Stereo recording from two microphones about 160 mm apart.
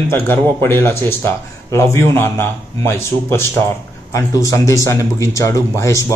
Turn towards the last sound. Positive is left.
turn(degrees=20)  # may be behind; listen again after turning